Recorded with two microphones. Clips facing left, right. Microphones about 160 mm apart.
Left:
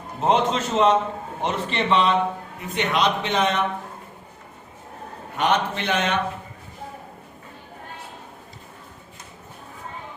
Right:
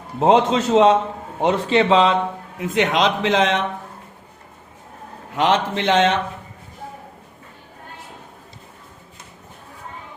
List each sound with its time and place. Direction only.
0.2 s a man's voice: 90° right
5.4 s a man's voice: 90° right